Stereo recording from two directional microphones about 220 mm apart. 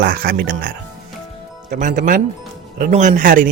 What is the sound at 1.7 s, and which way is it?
Speech, 35° right (ahead or behind).